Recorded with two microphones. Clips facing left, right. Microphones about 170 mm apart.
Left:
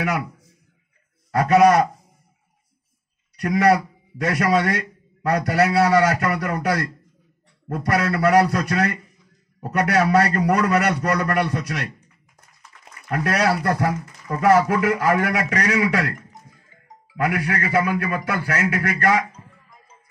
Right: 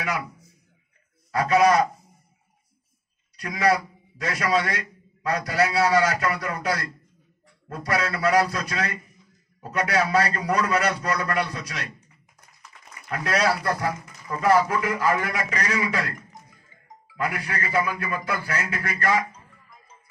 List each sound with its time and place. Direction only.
0.0 s a sound: 65° left (ahead or behind)
1.3 s a man's voice: 60° left (ahead or behind)
3.3 s a man's voice: 60° left (ahead or behind)
13.1 s a man's voice: 60° left (ahead or behind)
17.2 s a man's voice: 70° left (ahead or behind)